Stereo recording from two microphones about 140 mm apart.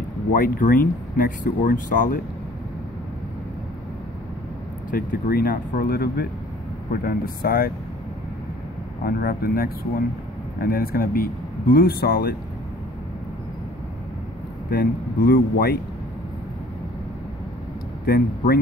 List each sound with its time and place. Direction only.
0.3 s speech: 80° left
4.9 s speech: 85° left
9.0 s speech: 90° left
14.7 s speech: 90° left
18.0 s speech: 90° left